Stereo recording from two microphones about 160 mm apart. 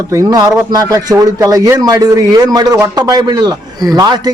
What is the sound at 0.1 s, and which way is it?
Speech, 20° right (ahead or behind).